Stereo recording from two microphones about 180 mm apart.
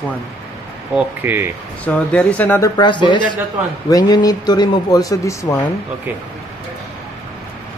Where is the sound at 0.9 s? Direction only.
10° right (ahead or behind).